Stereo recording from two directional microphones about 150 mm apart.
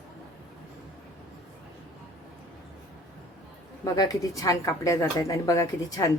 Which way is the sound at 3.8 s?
25° left (ahead or behind).